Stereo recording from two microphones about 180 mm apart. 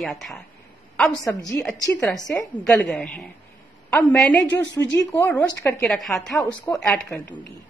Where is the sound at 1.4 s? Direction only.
5° left (ahead or behind).